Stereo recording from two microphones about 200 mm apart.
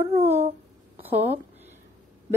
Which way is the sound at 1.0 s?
10° right (ahead or behind).